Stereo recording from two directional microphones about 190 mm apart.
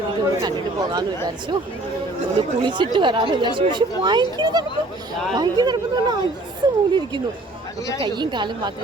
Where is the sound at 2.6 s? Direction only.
25° right (ahead or behind).